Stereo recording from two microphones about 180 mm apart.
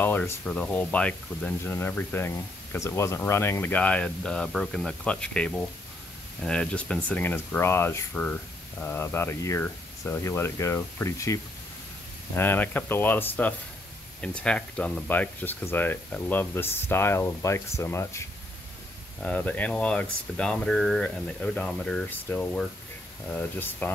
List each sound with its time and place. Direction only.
0.0 s speech: 10° left (ahead or behind)
19.2 s speech: 10° left (ahead or behind)